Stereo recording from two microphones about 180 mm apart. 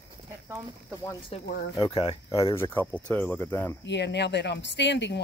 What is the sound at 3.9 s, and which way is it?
Speech, 70° left (ahead or behind).